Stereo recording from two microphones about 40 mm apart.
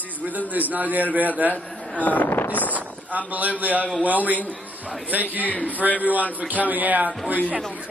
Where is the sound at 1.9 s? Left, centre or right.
Left.